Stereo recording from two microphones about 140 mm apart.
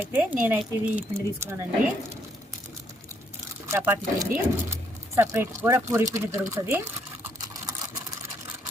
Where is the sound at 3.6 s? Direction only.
20° right (ahead or behind).